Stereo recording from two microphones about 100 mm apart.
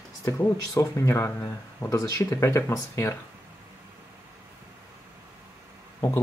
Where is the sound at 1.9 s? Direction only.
30° left (ahead or behind).